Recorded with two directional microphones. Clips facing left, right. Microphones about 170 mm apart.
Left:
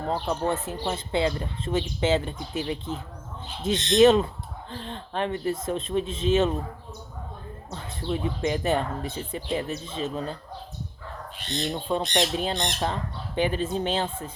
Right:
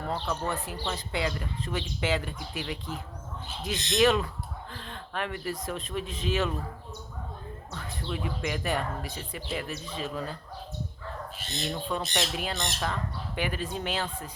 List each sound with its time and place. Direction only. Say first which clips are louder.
0.0 s speech: left 5 dB; 25° left (ahead or behind)
7.7 s speech: left 6 dB; 25° left (ahead or behind)
11.7 s speech: left 5 dB; 25° left (ahead or behind)